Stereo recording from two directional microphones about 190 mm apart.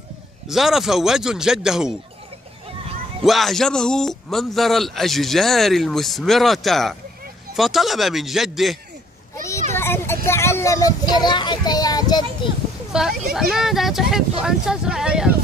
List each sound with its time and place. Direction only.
0.5 s a man's voice: centre (ahead or behind)
3.3 s a man's voice: centre (ahead or behind)
9.8 s a child's voice: 10° left (ahead or behind)
12.9 s a man's voice: 5° right (ahead or behind)